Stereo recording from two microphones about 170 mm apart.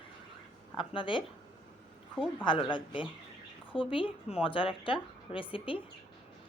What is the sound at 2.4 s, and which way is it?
Speech, 30° left (ahead or behind).